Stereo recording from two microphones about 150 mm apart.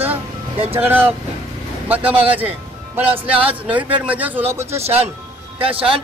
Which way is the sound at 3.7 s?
10° right (ahead or behind).